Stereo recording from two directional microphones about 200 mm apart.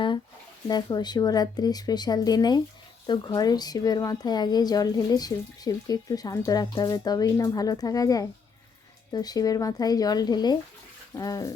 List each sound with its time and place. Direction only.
0.7 s speech: 20° left (ahead or behind)